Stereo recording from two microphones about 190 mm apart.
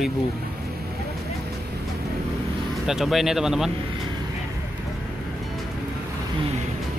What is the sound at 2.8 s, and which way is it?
Speech, centre (ahead or behind).